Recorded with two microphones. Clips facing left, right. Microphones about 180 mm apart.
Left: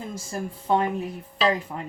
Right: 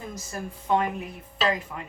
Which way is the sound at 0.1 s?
30° left (ahead or behind).